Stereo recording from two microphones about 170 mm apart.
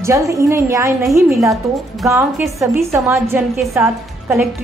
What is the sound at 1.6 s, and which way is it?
Speech, centre (ahead or behind).